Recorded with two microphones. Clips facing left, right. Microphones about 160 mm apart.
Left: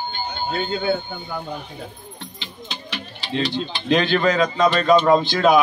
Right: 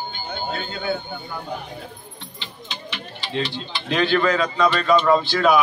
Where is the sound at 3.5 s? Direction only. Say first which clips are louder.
Left 6 dB; 20° left (ahead or behind).